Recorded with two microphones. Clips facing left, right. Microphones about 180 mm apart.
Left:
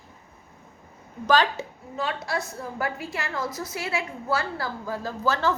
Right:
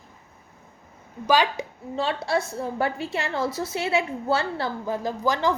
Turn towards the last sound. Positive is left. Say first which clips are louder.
# right 2 dB
turn(degrees=-15)  # may be behind; listen again after turning